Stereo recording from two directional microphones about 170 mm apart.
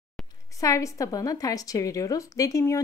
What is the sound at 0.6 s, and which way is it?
A woman's voice, 20° left (ahead or behind).